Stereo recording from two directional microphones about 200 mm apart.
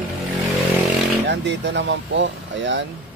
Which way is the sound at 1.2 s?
60° right (ahead or behind).